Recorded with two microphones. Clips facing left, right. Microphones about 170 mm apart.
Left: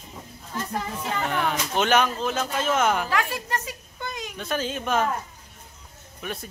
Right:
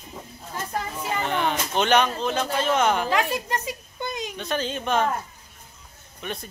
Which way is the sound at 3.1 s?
20° right (ahead or behind).